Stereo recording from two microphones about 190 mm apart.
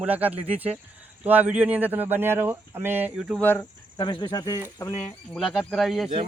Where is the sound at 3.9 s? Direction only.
25° left (ahead or behind).